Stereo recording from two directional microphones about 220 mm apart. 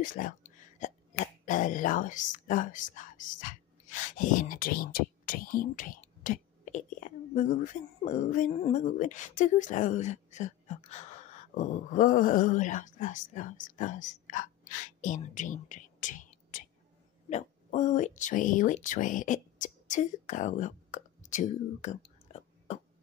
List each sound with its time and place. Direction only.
0.0 s a woman's voice: 40° left (ahead or behind)